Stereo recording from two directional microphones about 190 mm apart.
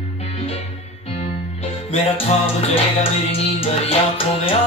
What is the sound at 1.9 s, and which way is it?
Music, 30° left (ahead or behind).